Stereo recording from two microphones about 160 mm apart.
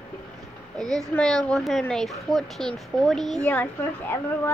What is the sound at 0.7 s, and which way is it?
A child's voice, 5° left (ahead or behind).